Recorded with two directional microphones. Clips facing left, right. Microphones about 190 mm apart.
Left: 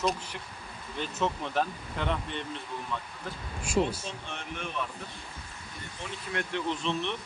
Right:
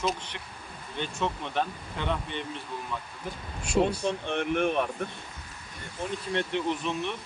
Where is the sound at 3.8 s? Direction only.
60° right (ahead or behind).